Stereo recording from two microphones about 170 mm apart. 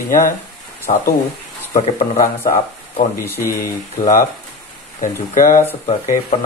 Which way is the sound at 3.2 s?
15° left (ahead or behind).